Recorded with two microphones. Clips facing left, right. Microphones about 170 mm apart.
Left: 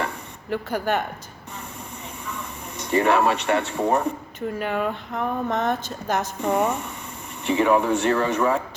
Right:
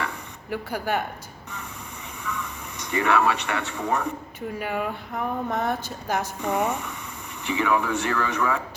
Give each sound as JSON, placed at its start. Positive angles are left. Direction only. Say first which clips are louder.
{"t": 0.5, "sound": "speech", "louder": "left 3 dB", "side_deg": -10}
{"t": 2.2, "sound": "vehicle", "louder": "right 3 dB", "side_deg": 35}
{"t": 2.9, "sound": "speech", "louder": "left 3 dB", "side_deg": 35}
{"t": 4.4, "sound": "speech", "louder": "left 3 dB", "side_deg": -10}
{"t": 6.4, "sound": "speech", "louder": "left 4 dB", "side_deg": 35}